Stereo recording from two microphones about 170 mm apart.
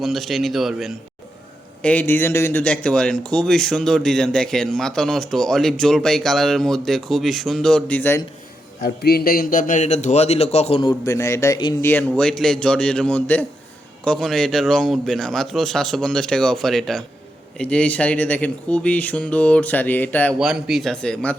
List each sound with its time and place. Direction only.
0.0 s speech: centre (ahead or behind)
1.8 s speech: 10° left (ahead or behind)
8.8 s a man's voice: 65° left (ahead or behind); by 20.3 s 10° left (ahead or behind)
20.4 s speech: centre (ahead or behind)